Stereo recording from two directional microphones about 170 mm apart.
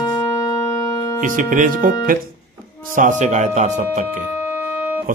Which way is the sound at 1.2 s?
50° right (ahead or behind).